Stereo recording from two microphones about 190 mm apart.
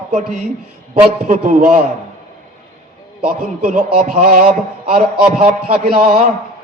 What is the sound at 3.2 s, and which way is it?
A man's voice, 50° right (ahead or behind).